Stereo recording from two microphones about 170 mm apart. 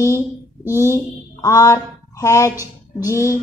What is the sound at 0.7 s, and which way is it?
Speech, 15° left (ahead or behind).